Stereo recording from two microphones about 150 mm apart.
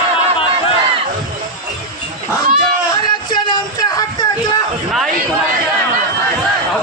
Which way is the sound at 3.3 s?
30° left (ahead or behind).